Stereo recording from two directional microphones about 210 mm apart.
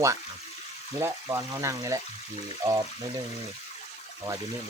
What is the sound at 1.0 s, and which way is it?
Speech, 15° right (ahead or behind).